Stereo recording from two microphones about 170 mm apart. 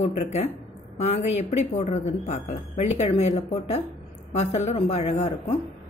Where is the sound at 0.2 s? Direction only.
40° left (ahead or behind).